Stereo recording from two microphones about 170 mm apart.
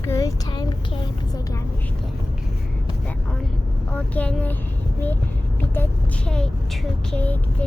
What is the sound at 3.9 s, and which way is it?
Speech, 10° left (ahead or behind).